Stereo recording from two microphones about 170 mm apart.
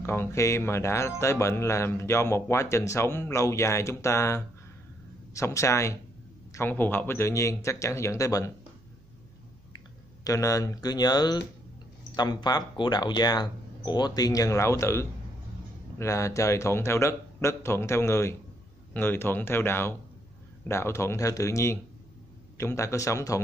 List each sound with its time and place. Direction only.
0.0 s speech: 15° left (ahead or behind)
10.2 s speech: 20° left (ahead or behind)